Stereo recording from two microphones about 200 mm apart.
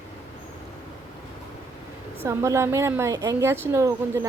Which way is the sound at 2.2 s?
15° right (ahead or behind).